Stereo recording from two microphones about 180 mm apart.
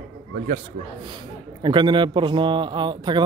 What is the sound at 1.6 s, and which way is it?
Speech, 25° right (ahead or behind).